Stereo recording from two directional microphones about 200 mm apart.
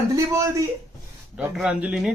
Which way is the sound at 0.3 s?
15° right (ahead or behind).